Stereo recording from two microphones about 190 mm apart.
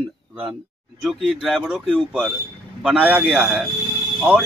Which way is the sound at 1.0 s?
Centre (ahead or behind).